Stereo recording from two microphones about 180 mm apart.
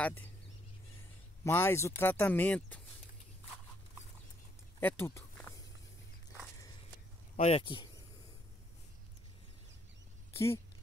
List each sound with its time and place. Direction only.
0.0 s speech: 10° left (ahead or behind)
1.4 s speech: 15° left (ahead or behind)
4.7 s a sound: 15° left (ahead or behind)
7.3 s speech: 35° left (ahead or behind)
10.3 s speech: 15° left (ahead or behind)